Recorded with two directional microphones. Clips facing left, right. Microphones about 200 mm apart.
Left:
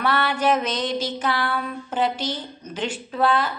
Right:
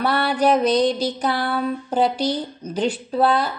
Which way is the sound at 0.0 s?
35° right (ahead or behind).